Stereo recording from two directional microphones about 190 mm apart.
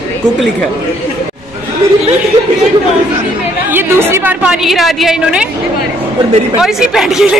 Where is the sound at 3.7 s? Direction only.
10° right (ahead or behind).